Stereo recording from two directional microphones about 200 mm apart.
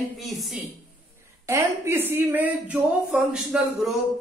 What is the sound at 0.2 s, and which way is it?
Speech, centre (ahead or behind).